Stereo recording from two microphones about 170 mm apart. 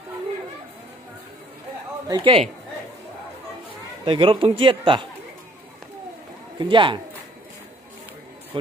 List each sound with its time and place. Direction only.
2.0 s speech: 30° right (ahead or behind)
4.0 s speech: 30° right (ahead or behind)
6.6 s speech: 30° right (ahead or behind)